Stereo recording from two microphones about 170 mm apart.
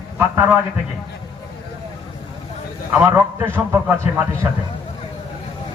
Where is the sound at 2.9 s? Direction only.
10° right (ahead or behind).